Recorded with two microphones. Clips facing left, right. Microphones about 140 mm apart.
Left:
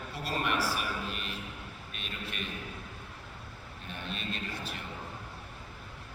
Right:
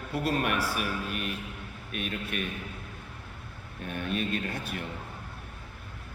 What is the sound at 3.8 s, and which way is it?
Speech, 55° right (ahead or behind).